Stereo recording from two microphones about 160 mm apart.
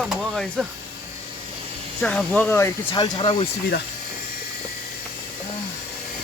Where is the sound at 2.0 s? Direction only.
5° left (ahead or behind).